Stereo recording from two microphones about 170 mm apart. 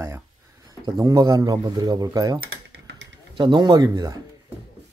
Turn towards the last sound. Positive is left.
turn(degrees=-20)  # may be behind; listen again after turning